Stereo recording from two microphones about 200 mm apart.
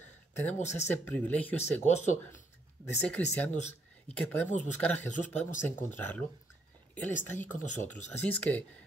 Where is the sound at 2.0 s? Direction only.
35° left (ahead or behind).